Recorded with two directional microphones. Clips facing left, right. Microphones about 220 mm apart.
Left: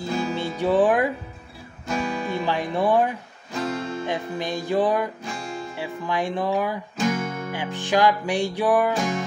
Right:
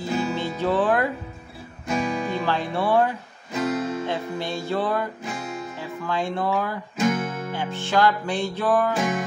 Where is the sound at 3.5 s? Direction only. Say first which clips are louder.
Right 3 dB; 5° right (ahead or behind).